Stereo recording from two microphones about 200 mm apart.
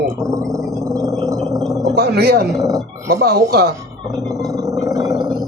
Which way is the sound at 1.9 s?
50° right (ahead or behind).